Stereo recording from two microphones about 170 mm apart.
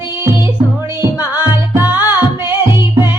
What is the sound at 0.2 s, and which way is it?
Music, 15° right (ahead or behind).